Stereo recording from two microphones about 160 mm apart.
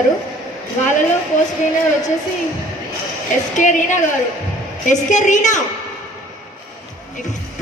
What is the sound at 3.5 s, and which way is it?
A man's voice, 50° left (ahead or behind).